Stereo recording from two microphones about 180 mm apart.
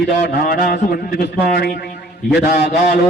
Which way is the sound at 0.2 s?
55° left (ahead or behind).